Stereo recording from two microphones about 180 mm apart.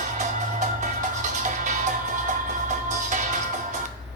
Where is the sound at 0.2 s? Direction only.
40° right (ahead or behind).